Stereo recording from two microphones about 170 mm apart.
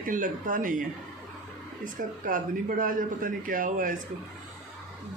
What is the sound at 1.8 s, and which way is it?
Speech, 50° right (ahead or behind).